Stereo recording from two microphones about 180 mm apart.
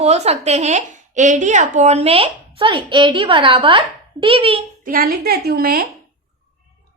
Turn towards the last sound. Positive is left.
turn(degrees=-60)  # may be behind; listen again after turning